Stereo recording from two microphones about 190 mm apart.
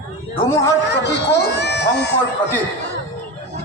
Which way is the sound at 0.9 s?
65° left (ahead or behind).